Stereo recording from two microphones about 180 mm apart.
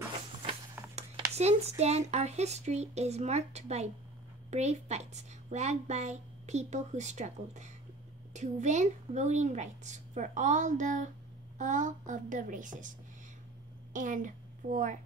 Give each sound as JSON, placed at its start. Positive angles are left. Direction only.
{"t": 0.8, "sound": "writing", "side_deg": -10}
{"t": 1.3, "sound": "a woman's voice", "side_deg": -35}
{"t": 13.9, "sound": "a woman's voice", "side_deg": -45}